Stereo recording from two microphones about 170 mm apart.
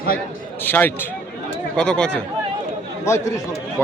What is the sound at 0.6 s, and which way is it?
A man's voice, 10° left (ahead or behind).